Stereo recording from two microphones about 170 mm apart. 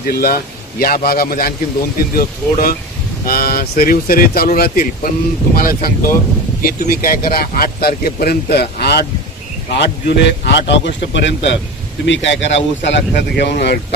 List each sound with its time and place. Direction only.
0.1 s speech: 60° left (ahead or behind)
9.7 s a man's voice: 90° left